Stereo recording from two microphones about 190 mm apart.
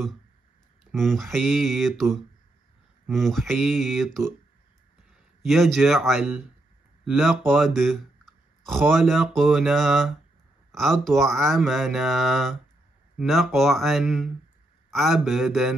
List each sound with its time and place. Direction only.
0.9 s speech: centre (ahead or behind)
3.1 s speech: centre (ahead or behind)
5.5 s speech: centre (ahead or behind)